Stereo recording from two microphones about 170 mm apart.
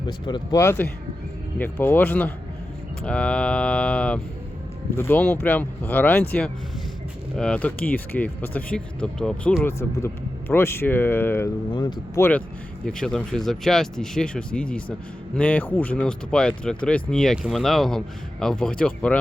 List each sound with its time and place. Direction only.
0.1 s speech: 25° left (ahead or behind)
0.6 s speech: 15° left (ahead or behind)
11.7 s speech: 25° left (ahead or behind)
12.8 s speech: 5° left (ahead or behind)